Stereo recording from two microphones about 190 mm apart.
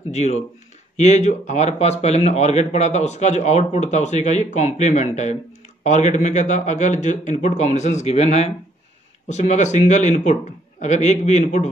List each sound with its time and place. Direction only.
0.1 s speech: 35° left (ahead or behind)